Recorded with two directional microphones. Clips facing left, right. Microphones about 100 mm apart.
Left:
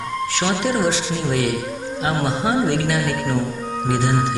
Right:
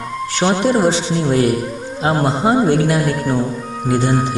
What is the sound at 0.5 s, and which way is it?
Speech, 40° right (ahead or behind).